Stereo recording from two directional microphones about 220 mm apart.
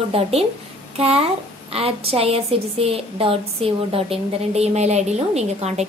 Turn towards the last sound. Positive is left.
turn(degrees=-30)  # may be behind; listen again after turning